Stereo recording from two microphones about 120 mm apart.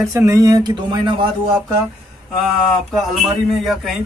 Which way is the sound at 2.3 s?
Centre (ahead or behind).